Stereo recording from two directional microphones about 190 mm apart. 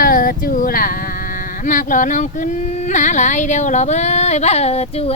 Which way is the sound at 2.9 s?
40° left (ahead or behind).